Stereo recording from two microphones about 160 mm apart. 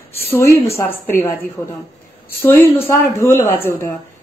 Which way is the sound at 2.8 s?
15° left (ahead or behind).